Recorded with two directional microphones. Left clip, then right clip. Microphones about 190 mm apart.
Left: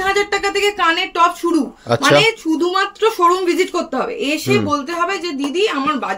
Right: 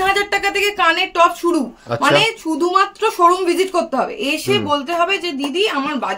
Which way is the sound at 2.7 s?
30° right (ahead or behind).